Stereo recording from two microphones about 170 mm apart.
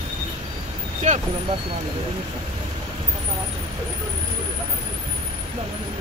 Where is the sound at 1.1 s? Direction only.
45° right (ahead or behind).